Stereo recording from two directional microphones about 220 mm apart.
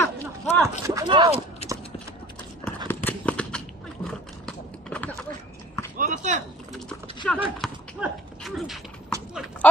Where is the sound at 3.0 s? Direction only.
5° left (ahead or behind).